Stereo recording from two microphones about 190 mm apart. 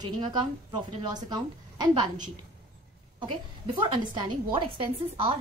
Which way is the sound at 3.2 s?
25° right (ahead or behind).